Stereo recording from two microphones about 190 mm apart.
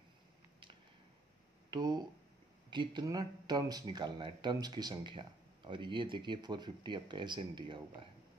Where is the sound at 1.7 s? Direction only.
20° right (ahead or behind).